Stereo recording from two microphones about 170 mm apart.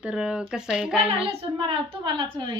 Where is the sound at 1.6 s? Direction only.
30° right (ahead or behind).